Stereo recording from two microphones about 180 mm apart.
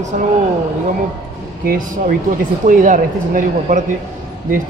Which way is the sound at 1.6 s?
55° right (ahead or behind).